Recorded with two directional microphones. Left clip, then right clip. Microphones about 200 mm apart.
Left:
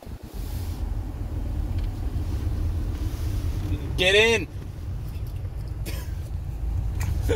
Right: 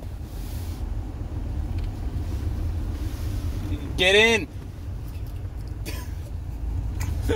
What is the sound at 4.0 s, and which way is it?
Speech, 60° right (ahead or behind).